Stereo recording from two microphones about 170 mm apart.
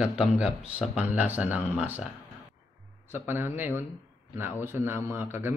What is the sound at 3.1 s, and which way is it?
A man's voice, 10° right (ahead or behind).